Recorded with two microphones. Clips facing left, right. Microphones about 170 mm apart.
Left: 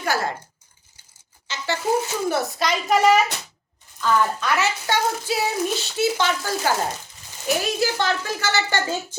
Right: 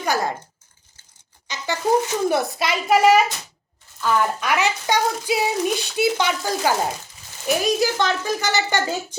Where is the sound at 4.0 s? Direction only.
15° right (ahead or behind).